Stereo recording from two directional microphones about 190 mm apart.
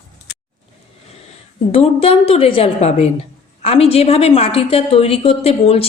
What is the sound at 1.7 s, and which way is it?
A woman's voice, 30° left (ahead or behind).